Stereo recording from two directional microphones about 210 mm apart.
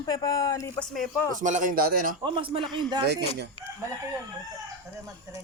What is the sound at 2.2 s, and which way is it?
Speech, 25° right (ahead or behind).